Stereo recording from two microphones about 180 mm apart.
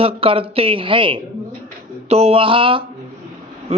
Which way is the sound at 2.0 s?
35° right (ahead or behind).